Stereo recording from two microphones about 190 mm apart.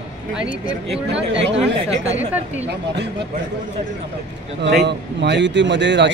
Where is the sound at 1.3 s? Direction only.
70° right (ahead or behind).